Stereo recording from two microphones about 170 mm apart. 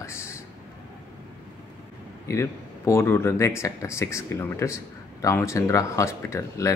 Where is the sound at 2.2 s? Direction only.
15° left (ahead or behind).